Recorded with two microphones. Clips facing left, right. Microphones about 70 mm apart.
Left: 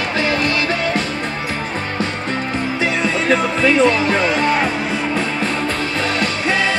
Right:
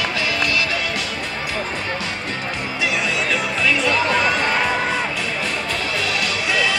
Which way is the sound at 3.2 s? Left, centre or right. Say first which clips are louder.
Left 8 dB; left.